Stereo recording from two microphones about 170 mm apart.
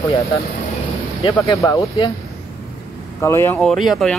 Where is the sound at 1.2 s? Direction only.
25° left (ahead or behind).